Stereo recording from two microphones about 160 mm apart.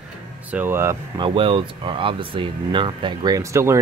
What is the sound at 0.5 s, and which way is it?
Speech, 10° right (ahead or behind).